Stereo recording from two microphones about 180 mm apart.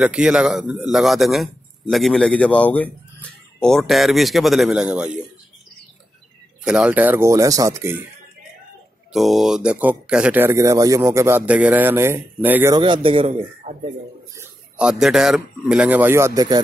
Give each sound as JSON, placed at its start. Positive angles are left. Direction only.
{"t": 0.0, "sound": "a man's voice", "side_deg": -5}
{"t": 6.6, "sound": "speech", "side_deg": -5}
{"t": 9.1, "sound": "speech", "side_deg": 0}
{"t": 12.7, "sound": "a man's voice", "side_deg": -25}
{"t": 14.3, "sound": "speech", "side_deg": -10}